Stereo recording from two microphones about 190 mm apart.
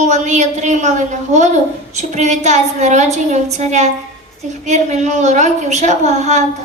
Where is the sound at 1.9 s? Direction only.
40° right (ahead or behind).